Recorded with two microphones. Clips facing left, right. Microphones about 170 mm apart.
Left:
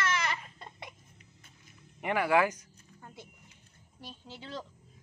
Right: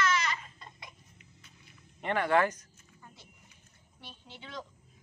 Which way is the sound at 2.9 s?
55° left (ahead or behind).